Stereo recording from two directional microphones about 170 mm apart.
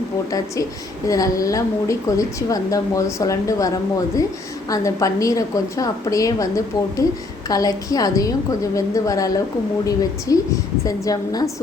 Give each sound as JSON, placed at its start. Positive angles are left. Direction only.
{"t": 0.3, "sound": "a woman's voice", "side_deg": 20}
{"t": 4.7, "sound": "a woman's voice", "side_deg": 20}
{"t": 7.5, "sound": "a woman's voice", "side_deg": 20}